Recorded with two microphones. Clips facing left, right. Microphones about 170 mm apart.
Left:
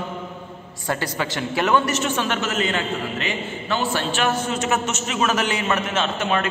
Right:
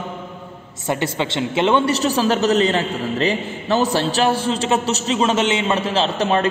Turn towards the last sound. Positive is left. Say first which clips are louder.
# right 5 dB
turn(degrees=-35)  # may be behind; listen again after turning